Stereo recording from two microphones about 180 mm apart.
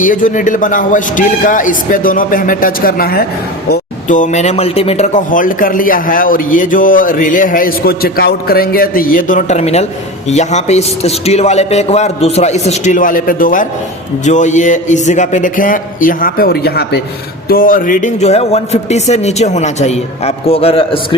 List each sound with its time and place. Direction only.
0.0 s speech: 45° left (ahead or behind)
3.7 s speech: 45° left (ahead or behind); by 17.0 s 60° left (ahead or behind)
17.5 s speech: 50° left (ahead or behind); by 21.2 s 30° left (ahead or behind)